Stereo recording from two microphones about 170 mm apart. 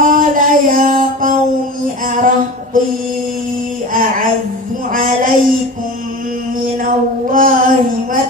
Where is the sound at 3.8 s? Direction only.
55° right (ahead or behind).